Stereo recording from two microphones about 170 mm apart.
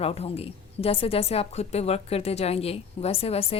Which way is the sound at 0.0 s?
35° left (ahead or behind).